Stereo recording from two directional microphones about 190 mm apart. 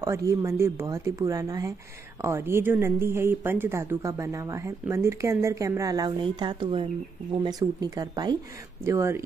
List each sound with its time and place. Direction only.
0.0 s speech: 15° right (ahead or behind)